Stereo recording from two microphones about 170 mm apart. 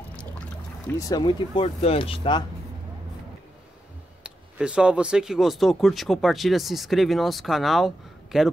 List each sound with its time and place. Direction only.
0.1 s a sound: 5° left (ahead or behind)
0.9 s speech: 20° left (ahead or behind)
4.2 s speech: 5° right (ahead or behind)